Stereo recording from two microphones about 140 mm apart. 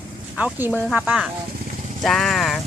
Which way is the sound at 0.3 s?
10° right (ahead or behind).